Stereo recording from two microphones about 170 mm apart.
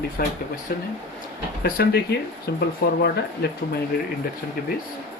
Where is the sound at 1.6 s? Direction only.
65° left (ahead or behind).